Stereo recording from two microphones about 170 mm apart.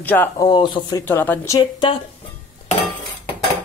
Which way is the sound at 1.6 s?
30° left (ahead or behind).